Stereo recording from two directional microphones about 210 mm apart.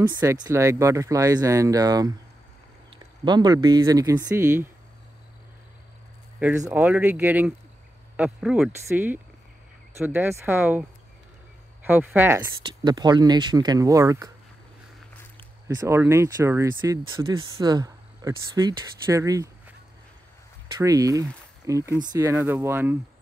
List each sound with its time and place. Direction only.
0.2 s speech: 15° right (ahead or behind)
6.6 s speech: 10° right (ahead or behind)
12.6 s speech: 20° right (ahead or behind)
15.3 s speech: 15° right (ahead or behind)
20.8 s speech: 15° right (ahead or behind)